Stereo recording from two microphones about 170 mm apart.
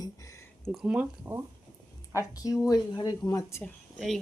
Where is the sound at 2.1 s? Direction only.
20° left (ahead or behind).